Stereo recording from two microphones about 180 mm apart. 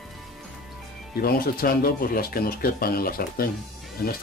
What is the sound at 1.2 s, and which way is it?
Speech, 55° left (ahead or behind).